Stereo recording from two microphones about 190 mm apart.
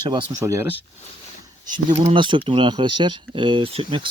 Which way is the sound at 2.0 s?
30° right (ahead or behind).